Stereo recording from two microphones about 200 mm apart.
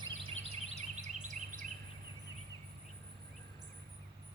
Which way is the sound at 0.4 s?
35° right (ahead or behind).